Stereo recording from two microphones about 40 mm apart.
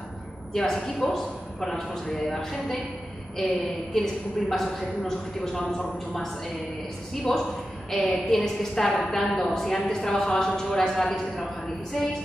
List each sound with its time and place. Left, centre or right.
0.5 s a woman's voice: centre